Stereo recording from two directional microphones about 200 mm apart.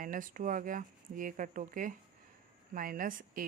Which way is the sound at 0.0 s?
45° right (ahead or behind).